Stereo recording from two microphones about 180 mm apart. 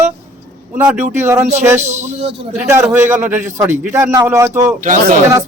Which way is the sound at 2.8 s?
15° right (ahead or behind).